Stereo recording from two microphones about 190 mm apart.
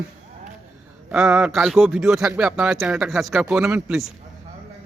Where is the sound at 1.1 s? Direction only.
5° right (ahead or behind).